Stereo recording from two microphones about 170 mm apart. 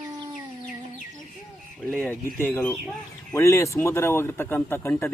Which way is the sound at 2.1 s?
15° left (ahead or behind).